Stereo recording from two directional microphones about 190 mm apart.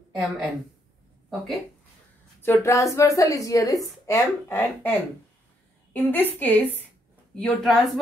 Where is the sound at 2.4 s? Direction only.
10° left (ahead or behind).